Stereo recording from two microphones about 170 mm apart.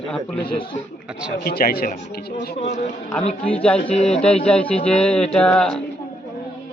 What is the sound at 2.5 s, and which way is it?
Speech, 40° left (ahead or behind).